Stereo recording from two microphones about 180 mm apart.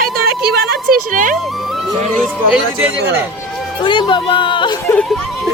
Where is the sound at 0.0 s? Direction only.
60° right (ahead or behind).